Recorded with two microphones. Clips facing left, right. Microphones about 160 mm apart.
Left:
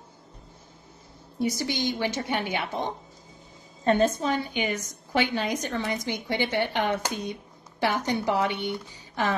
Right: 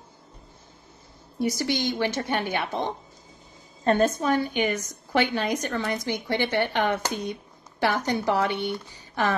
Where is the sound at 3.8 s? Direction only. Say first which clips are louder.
Right 1 dB; 45° right (ahead or behind).